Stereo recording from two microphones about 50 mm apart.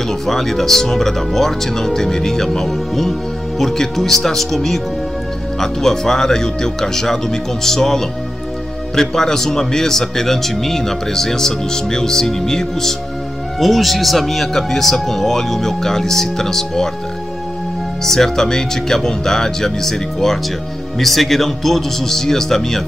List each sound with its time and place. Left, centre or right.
0.3 s speech: centre
18.0 s speech: centre